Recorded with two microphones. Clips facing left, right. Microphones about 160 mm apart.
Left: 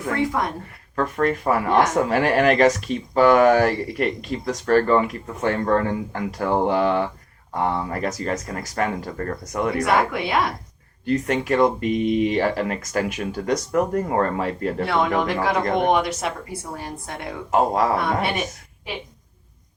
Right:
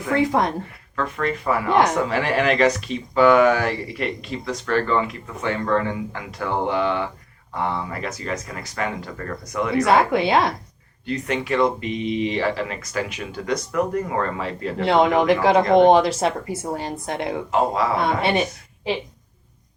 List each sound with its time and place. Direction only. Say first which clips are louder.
0.3 s a woman's voice: right 4 dB; 25° right (ahead or behind)
0.9 s speech: left 3 dB; 45° left (ahead or behind)
9.8 s a woman's voice: right 6 dB; 25° right (ahead or behind)
11.0 s speech: left 3 dB; 45° left (ahead or behind)
14.8 s a woman's voice: right 7 dB; 20° right (ahead or behind)
17.5 s speech: left 3 dB; 45° left (ahead or behind)
18.0 s a woman's voice: right 3 dB; 25° right (ahead or behind)